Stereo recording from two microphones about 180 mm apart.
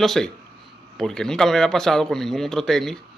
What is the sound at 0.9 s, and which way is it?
A man's voice, centre (ahead or behind).